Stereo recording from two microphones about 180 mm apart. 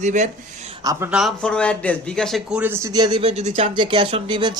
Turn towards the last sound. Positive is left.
turn(degrees=-25)  # may be behind; listen again after turning